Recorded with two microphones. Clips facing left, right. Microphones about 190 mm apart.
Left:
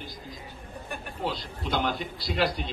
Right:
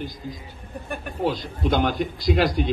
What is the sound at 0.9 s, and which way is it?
A man's voice, 55° right (ahead or behind).